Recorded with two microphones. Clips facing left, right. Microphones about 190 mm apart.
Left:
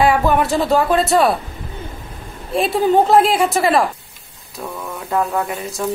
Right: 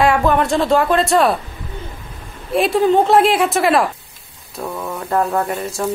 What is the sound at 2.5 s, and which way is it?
Speech, centre (ahead or behind).